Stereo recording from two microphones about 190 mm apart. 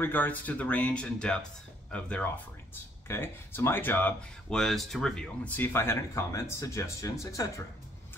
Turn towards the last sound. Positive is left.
turn(degrees=15)  # may be behind; listen again after turning